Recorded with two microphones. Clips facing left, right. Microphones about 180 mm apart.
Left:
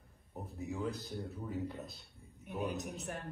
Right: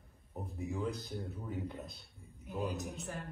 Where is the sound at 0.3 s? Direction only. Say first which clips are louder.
Right 1 dB; centre (ahead or behind).